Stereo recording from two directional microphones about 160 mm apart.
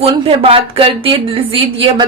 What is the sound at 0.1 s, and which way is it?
A woman's voice, 35° right (ahead or behind).